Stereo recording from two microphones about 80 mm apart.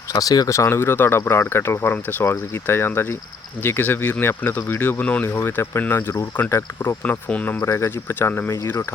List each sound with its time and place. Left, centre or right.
0.1 s speech: left; by 5.3 s centre
5.4 s speech: left
7.6 s speech: left